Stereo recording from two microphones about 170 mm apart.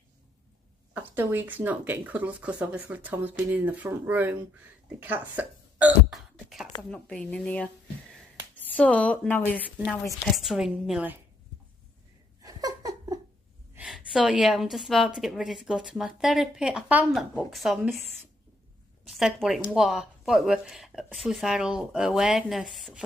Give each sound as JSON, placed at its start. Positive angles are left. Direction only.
{"t": 0.9, "sound": "speech", "side_deg": -10}
{"t": 4.8, "sound": "hiccup", "side_deg": -10}
{"t": 6.8, "sound": "a woman's voice", "side_deg": 5}
{"t": 10.2, "sound": "a woman's voice", "side_deg": 0}
{"t": 12.4, "sound": "laughter", "side_deg": -20}
{"t": 13.7, "sound": "a woman's voice", "side_deg": -5}
{"t": 19.0, "sound": "a woman's voice", "side_deg": 0}